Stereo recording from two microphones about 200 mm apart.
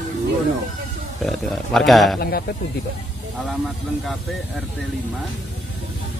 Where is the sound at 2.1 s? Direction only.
50° left (ahead or behind).